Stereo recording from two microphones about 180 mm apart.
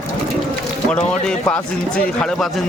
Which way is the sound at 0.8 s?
5° left (ahead or behind).